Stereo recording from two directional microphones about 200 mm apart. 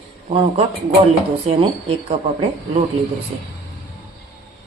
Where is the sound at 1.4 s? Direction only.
30° right (ahead or behind).